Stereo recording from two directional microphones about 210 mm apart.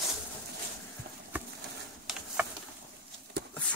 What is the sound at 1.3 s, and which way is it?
Bee, 10° right (ahead or behind).